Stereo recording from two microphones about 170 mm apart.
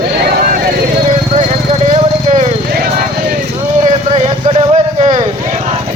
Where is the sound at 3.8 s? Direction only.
45° right (ahead or behind).